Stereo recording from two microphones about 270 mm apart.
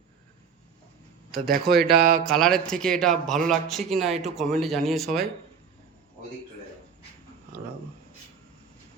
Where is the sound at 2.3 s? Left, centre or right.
Centre.